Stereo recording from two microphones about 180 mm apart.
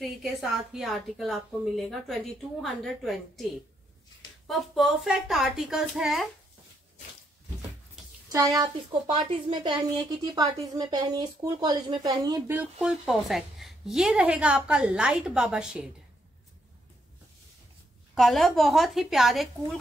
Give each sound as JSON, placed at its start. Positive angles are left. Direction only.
{"t": 0.0, "sound": "a woman's voice", "side_deg": 0}
{"t": 4.5, "sound": "a woman's voice", "side_deg": 0}
{"t": 8.3, "sound": "a woman's voice", "side_deg": -20}
{"t": 12.5, "sound": "a woman's voice", "side_deg": -5}
{"t": 18.1, "sound": "a woman's voice", "side_deg": 0}